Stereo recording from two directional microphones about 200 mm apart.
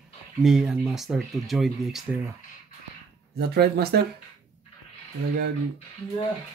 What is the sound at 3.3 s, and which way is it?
Speech, 50° right (ahead or behind).